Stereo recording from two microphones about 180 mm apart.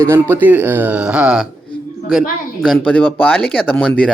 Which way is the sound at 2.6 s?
Centre (ahead or behind).